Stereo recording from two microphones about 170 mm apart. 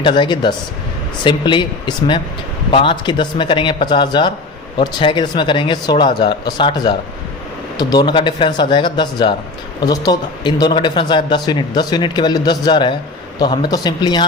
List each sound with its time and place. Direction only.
0.0 s a man's voice: 25° left (ahead or behind)
2.7 s a man's voice: 30° left (ahead or behind)